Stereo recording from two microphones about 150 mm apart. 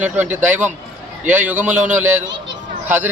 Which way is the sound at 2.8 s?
10° right (ahead or behind).